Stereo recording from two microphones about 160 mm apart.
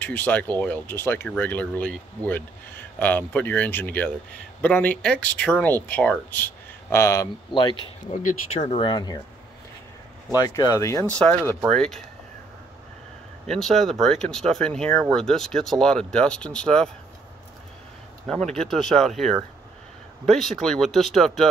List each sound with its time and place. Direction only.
0.0 s speech: 10° left (ahead or behind)
7.5 s speech: 35° left (ahead or behind)
8.1 s speech: 55° left (ahead or behind)
8.7 s speech: 30° left (ahead or behind)
10.3 s speech: 25° left (ahead or behind); by 12.0 s 5° left (ahead or behind)
13.5 s speech: centre (ahead or behind)
18.2 s speech: 5° left (ahead or behind)